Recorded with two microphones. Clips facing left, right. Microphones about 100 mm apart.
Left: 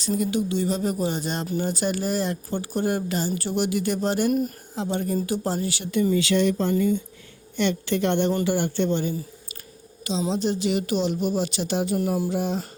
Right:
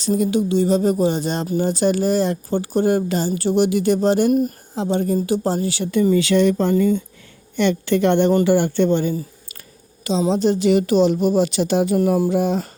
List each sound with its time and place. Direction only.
0.0 s a woman's voice: 25° right (ahead or behind)
6.2 s speech: 60° right (ahead or behind); by 7.0 s 75° right (ahead or behind)
7.6 s a woman's voice: 55° right (ahead or behind)
10.1 s a woman's voice: 40° right (ahead or behind)
11.8 s speech: 90° right
12.2 s a woman's voice: 60° right (ahead or behind)